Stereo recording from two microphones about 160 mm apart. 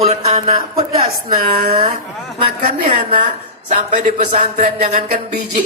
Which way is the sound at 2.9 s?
50° right (ahead or behind).